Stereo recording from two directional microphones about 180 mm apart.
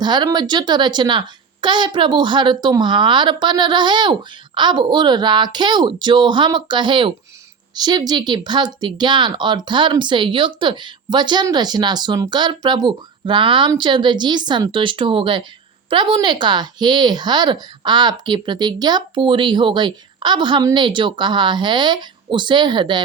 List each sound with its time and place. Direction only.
0.0 s speech: 25° right (ahead or behind)